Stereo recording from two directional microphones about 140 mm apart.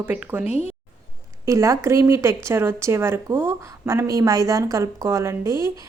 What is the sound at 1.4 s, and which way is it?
A woman's voice, 20° right (ahead or behind).